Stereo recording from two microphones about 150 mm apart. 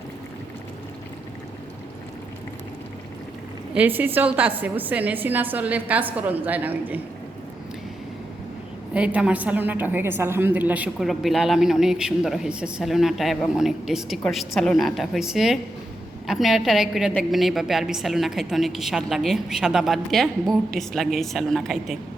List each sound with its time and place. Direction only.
3.8 s a woman's voice: 10° right (ahead or behind)
8.9 s a woman's voice: 10° right (ahead or behind)